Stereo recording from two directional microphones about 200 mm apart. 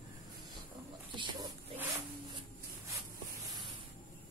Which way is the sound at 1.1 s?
25° right (ahead or behind).